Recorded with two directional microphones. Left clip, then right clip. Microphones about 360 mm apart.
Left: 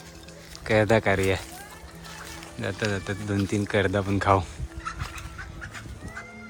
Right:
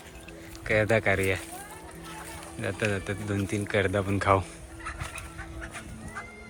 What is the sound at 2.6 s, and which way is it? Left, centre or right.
Speech, centre.